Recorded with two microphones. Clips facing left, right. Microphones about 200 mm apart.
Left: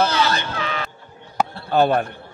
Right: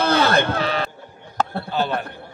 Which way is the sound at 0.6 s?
35° right (ahead or behind).